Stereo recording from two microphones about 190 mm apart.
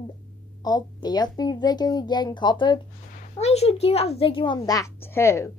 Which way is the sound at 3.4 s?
35° left (ahead or behind).